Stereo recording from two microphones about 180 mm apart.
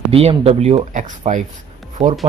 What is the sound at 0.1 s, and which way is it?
Speech, 35° right (ahead or behind).